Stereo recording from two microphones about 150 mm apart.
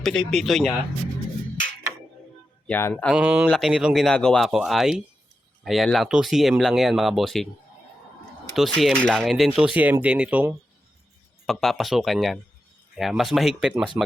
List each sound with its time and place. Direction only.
0.0 s speech: 5° left (ahead or behind)
2.6 s speech: 10° left (ahead or behind)
3.2 s speech: 10° right (ahead or behind)
8.5 s speech: centre (ahead or behind)
11.4 s speech: centre (ahead or behind)